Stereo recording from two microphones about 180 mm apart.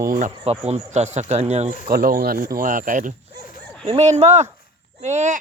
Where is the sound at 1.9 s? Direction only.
55° right (ahead or behind).